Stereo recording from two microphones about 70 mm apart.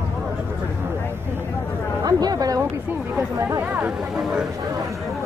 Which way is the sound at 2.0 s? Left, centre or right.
Right.